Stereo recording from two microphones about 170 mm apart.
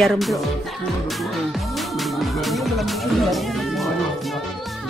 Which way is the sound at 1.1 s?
Centre (ahead or behind).